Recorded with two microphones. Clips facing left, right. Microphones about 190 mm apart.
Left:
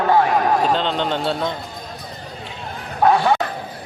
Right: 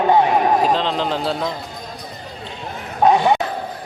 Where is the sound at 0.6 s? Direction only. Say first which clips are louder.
Right 1 dB; centre (ahead or behind).